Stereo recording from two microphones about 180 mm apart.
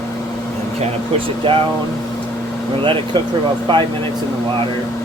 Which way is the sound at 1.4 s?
30° right (ahead or behind).